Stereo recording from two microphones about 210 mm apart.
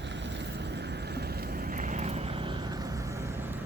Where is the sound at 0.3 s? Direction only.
55° right (ahead or behind); by 3.3 s 15° right (ahead or behind).